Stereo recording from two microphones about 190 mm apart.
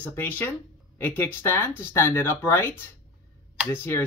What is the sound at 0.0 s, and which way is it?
Speech, 10° left (ahead or behind).